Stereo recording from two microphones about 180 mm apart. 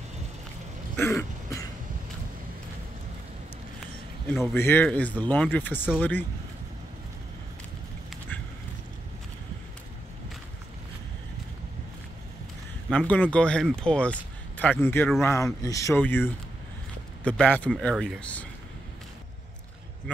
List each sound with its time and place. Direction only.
0.9 s throat clearing: 15° left (ahead or behind)
4.3 s speech: 15° left (ahead or behind)
12.9 s speech: 10° left (ahead or behind)